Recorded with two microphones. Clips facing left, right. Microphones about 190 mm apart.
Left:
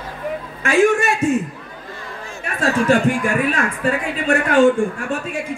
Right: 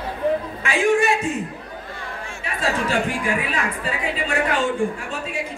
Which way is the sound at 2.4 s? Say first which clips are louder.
Left 5 dB; 50° left (ahead or behind).